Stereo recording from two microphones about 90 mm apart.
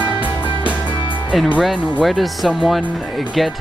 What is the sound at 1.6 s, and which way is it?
Speech, 5° right (ahead or behind).